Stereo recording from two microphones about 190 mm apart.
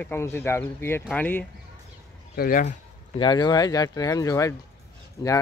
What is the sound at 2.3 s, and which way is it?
Speech, 50° left (ahead or behind).